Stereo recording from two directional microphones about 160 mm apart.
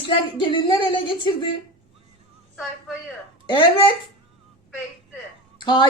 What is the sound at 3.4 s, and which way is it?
Speech, 30° left (ahead or behind).